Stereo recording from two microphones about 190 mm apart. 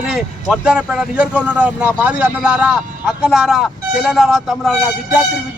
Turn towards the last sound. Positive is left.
turn(degrees=0)  # may be behind; listen again after turning